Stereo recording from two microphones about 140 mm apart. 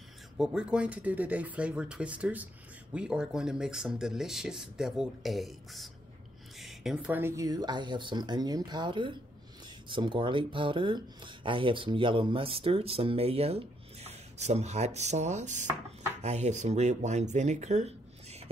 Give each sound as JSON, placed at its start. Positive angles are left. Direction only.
{"t": 0.4, "sound": "speech", "side_deg": -5}